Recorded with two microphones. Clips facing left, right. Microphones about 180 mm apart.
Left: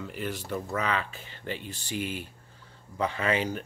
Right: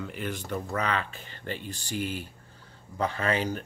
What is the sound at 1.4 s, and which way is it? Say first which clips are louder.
Speech: even; 45° right (ahead or behind).